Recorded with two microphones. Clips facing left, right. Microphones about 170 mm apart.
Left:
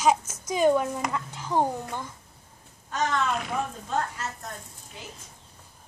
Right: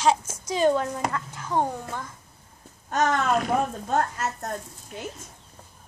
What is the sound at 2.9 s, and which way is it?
Speech, 50° right (ahead or behind).